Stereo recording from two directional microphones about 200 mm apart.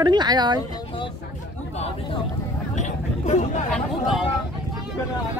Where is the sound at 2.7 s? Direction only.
35° left (ahead or behind).